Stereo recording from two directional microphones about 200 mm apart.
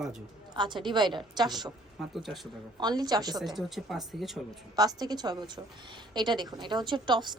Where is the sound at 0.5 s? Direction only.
25° right (ahead or behind).